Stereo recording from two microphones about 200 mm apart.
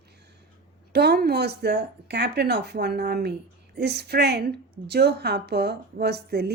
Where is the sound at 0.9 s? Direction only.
55° right (ahead or behind).